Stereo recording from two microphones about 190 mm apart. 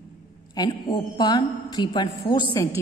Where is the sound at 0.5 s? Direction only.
25° left (ahead or behind).